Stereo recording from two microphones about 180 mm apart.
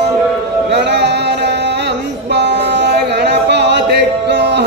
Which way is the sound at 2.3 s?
70° right (ahead or behind).